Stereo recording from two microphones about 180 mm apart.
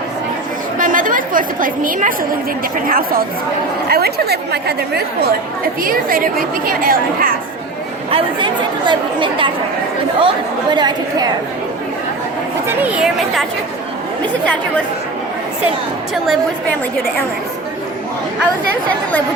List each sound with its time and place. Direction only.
0.8 s a woman's voice: 50° right (ahead or behind)
8.1 s speech: 25° right (ahead or behind)
12.6 s speech: 10° right (ahead or behind)
14.4 s speech: 5° left (ahead or behind)